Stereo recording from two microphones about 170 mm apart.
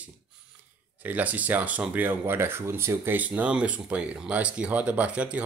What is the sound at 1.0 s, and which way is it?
Speech, 10° right (ahead or behind).